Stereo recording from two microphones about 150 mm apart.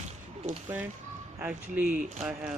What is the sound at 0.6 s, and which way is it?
Speech, 15° right (ahead or behind).